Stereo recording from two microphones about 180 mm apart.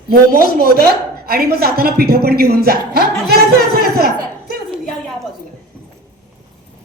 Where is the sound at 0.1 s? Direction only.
55° right (ahead or behind).